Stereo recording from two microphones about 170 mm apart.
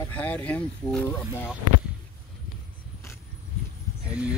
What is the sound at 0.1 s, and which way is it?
Speech, 10° left (ahead or behind).